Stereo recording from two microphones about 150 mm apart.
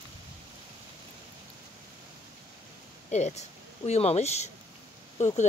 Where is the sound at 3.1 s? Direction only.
50° left (ahead or behind).